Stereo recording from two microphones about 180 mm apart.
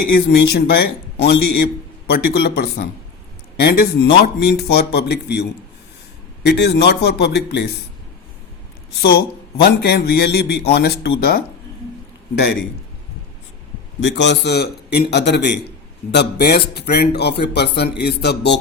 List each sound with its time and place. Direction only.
0.1 s speech: 65° left (ahead or behind)
6.4 s a man's voice: 70° left (ahead or behind)
9.0 s speech: 60° left (ahead or behind)
14.0 s a man's voice: 75° left (ahead or behind)